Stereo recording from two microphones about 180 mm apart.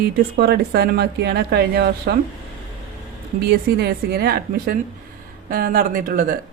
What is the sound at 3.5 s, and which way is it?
Speech, 65° right (ahead or behind).